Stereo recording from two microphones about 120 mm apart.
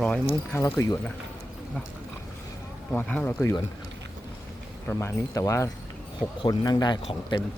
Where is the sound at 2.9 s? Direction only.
15° left (ahead or behind).